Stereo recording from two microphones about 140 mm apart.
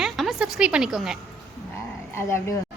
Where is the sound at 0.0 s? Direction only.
Centre (ahead or behind).